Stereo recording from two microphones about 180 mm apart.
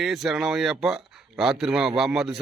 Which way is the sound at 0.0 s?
Centre (ahead or behind).